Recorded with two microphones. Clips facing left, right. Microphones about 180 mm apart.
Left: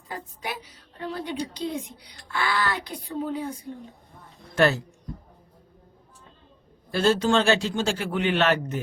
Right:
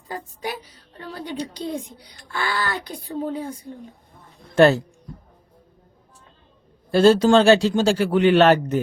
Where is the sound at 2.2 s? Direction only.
40° right (ahead or behind).